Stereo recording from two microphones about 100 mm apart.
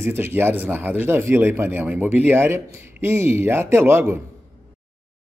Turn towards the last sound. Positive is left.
turn(degrees=-25)  # may be behind; listen again after turning